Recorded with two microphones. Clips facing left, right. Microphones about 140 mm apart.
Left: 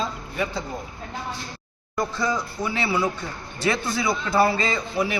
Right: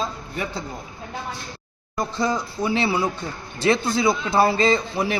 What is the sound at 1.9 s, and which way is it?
Speech, 25° right (ahead or behind).